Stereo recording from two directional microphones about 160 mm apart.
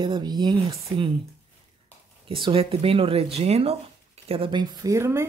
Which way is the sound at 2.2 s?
35° right (ahead or behind).